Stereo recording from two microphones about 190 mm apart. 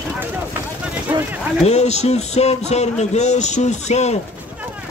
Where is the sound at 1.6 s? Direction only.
35° left (ahead or behind).